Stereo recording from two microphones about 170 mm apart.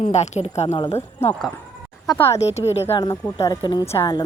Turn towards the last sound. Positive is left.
turn(degrees=20)  # may be behind; listen again after turning